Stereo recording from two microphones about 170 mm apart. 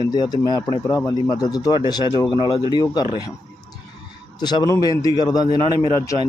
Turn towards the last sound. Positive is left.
turn(degrees=20)  # may be behind; listen again after turning